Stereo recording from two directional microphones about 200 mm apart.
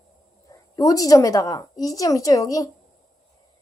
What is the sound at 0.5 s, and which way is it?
A woman's voice, 15° left (ahead or behind).